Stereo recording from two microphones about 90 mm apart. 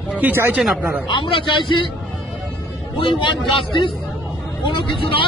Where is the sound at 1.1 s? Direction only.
70° left (ahead or behind).